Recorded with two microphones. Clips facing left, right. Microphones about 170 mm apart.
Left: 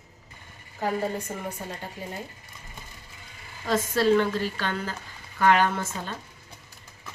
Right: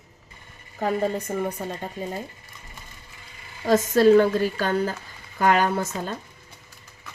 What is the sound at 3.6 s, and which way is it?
A woman's voice, 45° right (ahead or behind).